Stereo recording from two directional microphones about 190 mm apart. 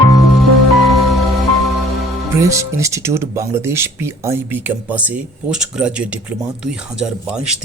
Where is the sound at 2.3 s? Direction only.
15° right (ahead or behind).